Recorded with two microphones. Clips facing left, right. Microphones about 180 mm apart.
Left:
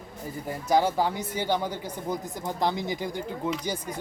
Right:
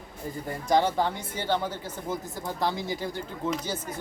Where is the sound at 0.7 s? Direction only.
10° left (ahead or behind).